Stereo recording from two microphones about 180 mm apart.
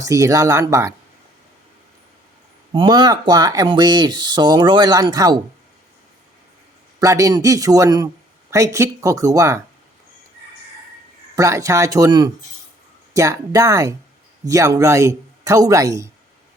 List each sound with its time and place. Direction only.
0.0 s a man's voice: 20° right (ahead or behind)
2.7 s speech: 25° right (ahead or behind)
7.0 s a man's voice: 20° right (ahead or behind)
11.3 s a man's voice: 15° right (ahead or behind)